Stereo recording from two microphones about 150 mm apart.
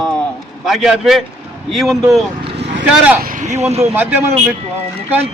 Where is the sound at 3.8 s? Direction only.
15° right (ahead or behind).